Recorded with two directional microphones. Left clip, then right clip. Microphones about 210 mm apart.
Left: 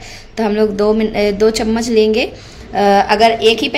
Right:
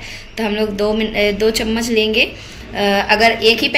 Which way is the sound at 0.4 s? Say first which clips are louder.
Left 4 dB; 35° left (ahead or behind).